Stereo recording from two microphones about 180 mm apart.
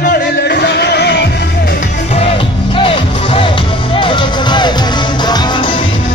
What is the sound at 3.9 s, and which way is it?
Music, 25° left (ahead or behind).